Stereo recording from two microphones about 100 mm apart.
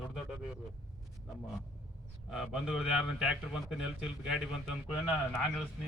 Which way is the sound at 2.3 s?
Centre (ahead or behind).